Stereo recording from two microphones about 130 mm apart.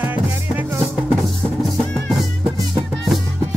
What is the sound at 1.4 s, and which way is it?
Music, 5° left (ahead or behind).